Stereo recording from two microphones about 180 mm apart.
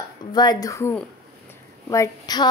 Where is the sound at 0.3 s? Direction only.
25° left (ahead or behind).